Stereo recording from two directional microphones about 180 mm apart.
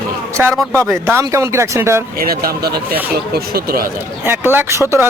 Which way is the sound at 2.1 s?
55° right (ahead or behind).